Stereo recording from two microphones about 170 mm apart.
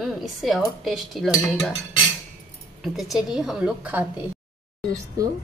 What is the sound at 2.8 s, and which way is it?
Speech, centre (ahead or behind).